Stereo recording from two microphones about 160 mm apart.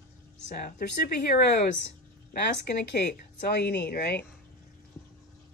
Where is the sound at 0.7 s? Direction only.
75° left (ahead or behind).